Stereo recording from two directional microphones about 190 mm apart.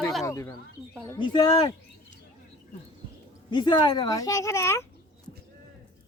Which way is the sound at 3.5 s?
25° left (ahead or behind).